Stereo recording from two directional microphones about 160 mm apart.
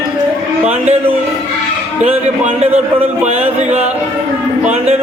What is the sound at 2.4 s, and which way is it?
Speech, 45° right (ahead or behind).